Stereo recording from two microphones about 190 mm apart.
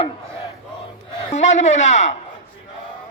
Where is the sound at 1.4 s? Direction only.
40° left (ahead or behind).